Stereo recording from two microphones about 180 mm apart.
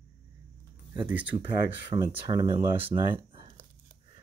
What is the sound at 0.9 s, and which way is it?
Speech, 10° right (ahead or behind).